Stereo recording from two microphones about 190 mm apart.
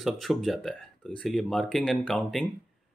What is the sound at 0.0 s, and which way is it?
Speech, centre (ahead or behind).